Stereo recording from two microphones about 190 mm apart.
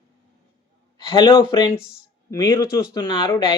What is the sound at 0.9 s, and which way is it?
Speech, 25° left (ahead or behind).